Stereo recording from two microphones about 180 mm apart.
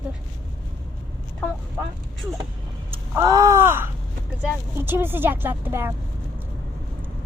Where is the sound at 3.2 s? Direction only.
20° right (ahead or behind).